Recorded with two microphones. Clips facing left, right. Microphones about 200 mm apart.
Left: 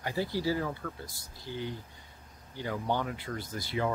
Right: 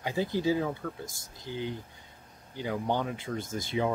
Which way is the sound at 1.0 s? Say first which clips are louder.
Right 3 dB; 45° right (ahead or behind).